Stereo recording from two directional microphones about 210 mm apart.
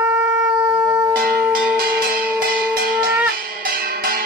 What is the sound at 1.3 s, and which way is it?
Cowbell, 45° right (ahead or behind).